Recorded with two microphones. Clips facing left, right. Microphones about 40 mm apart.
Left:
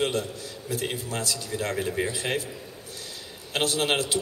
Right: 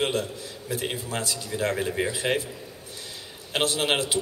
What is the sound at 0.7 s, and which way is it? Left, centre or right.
A man's voice, centre.